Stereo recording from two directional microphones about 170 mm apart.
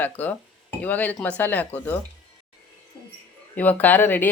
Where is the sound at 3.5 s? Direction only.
10° left (ahead or behind).